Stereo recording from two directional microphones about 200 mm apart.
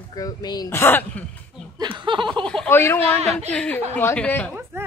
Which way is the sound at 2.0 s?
25° right (ahead or behind).